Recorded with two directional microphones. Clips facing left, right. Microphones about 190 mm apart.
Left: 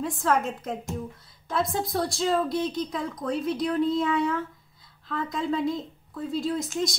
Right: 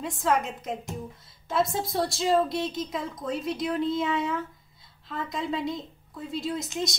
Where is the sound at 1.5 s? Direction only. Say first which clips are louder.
Even; centre (ahead or behind).